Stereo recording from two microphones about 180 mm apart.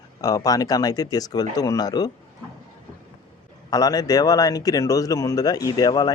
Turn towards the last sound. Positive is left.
turn(degrees=20)  # may be behind; listen again after turning